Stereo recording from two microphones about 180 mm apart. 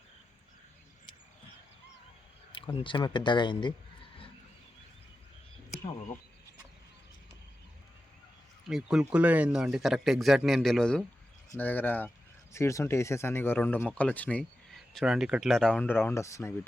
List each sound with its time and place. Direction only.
2.8 s speech: 25° left (ahead or behind)
8.7 s speech: 5° right (ahead or behind)
14.9 s speech: 5° right (ahead or behind); by 16.6 s 15° left (ahead or behind)